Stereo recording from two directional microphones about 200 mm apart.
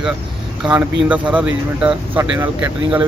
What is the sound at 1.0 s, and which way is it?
Speech, 5° right (ahead or behind).